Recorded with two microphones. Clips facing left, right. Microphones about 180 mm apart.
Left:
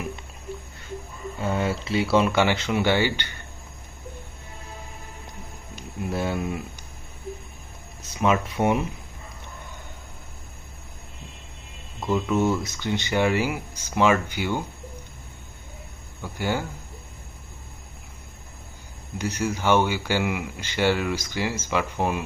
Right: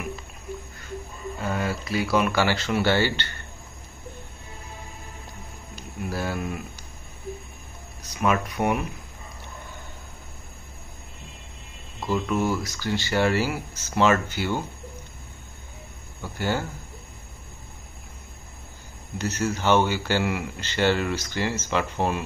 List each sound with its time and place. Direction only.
1.4 s speech: 25° left (ahead or behind)
5.8 s speech: 25° left (ahead or behind)
8.0 s speech: 25° left (ahead or behind)
12.1 s speech: 20° left (ahead or behind)
16.3 s speech: 10° left (ahead or behind)
19.1 s speech: 10° left (ahead or behind)